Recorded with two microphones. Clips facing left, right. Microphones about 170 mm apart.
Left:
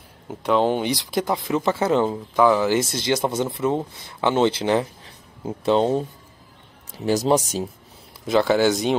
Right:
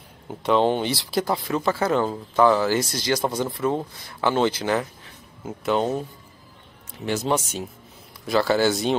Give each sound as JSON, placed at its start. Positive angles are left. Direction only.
{"t": 0.3, "sound": "speech", "side_deg": 5}
{"t": 7.1, "sound": "speech", "side_deg": 35}
{"t": 8.5, "sound": "speech", "side_deg": 15}